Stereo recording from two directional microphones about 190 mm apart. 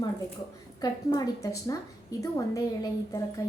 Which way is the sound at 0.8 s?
20° left (ahead or behind).